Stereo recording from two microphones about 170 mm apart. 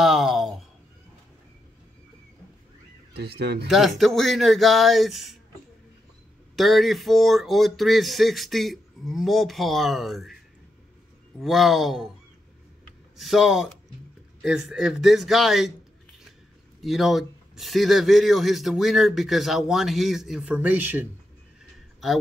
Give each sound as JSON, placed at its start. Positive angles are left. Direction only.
{"t": 0.0, "sound": "a sound", "side_deg": 0}
{"t": 3.2, "sound": "speech", "side_deg": -75}
{"t": 3.6, "sound": "a man's voice", "side_deg": 0}
{"t": 6.5, "sound": "a man's voice", "side_deg": 0}
{"t": 11.3, "sound": "a man's voice", "side_deg": 0}
{"t": 13.2, "sound": "a man's voice", "side_deg": 0}
{"t": 16.8, "sound": "a man's voice", "side_deg": 0}